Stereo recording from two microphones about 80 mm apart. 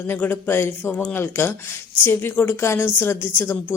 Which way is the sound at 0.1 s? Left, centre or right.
Left.